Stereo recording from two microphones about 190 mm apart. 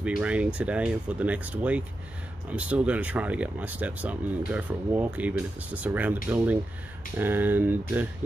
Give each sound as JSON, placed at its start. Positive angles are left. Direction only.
{"t": 0.2, "sound": "speech", "side_deg": -5}